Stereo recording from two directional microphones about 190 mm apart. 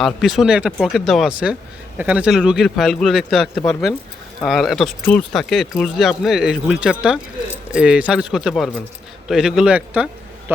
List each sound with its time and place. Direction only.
0.0 s speech: centre (ahead or behind)